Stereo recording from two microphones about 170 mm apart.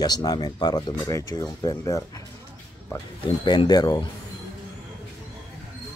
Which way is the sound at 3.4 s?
25° left (ahead or behind).